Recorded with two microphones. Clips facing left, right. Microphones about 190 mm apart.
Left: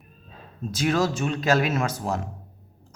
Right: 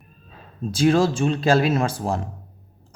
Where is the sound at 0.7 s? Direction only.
30° right (ahead or behind).